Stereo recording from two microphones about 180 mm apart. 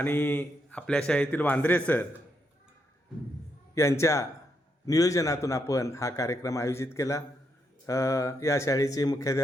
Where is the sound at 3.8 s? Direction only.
15° left (ahead or behind).